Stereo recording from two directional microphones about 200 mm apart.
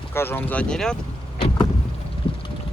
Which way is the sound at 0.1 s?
10° left (ahead or behind).